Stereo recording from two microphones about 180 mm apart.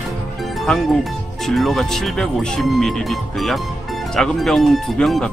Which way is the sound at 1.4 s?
Centre (ahead or behind).